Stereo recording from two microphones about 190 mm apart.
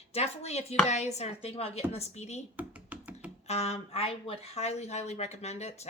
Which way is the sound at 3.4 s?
35° left (ahead or behind).